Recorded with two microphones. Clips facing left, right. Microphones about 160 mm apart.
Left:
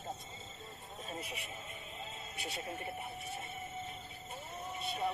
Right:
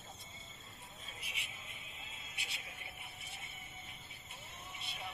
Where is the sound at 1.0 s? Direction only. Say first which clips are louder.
Left 12 dB; 45° left (ahead or behind).